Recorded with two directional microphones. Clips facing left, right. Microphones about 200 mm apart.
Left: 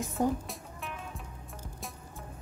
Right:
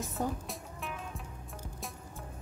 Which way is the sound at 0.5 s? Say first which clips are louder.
Right 1 dB; centre (ahead or behind).